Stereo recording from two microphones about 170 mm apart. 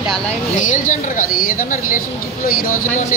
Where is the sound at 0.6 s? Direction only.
50° left (ahead or behind).